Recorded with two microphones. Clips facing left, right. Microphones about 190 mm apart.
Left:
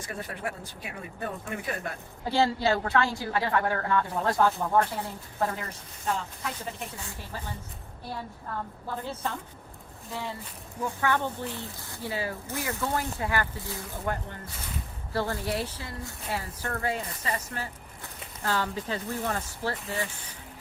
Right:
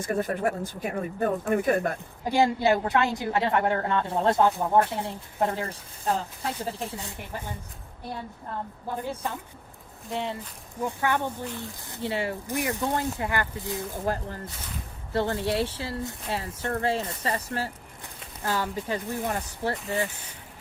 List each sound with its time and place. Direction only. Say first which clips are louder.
0.0 s speech: right 9 dB; 45° right (ahead or behind)
2.2 s a woman's voice: right 3 dB; 15° right (ahead or behind); by 6.9 s 30° right (ahead or behind)
6.9 s a woman's voice: right 3 dB; 20° right (ahead or behind)
14.0 s a woman's voice: right 1 dB; 35° right (ahead or behind)
18.4 s speech: right 1 dB; 10° right (ahead or behind)